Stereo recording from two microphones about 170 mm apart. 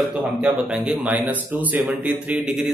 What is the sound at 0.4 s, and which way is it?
A man's voice, 5° right (ahead or behind).